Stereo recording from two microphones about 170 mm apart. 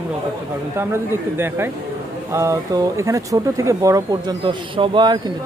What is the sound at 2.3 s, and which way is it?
Speech, 20° right (ahead or behind).